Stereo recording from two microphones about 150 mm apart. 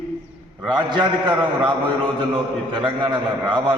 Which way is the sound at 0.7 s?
30° right (ahead or behind).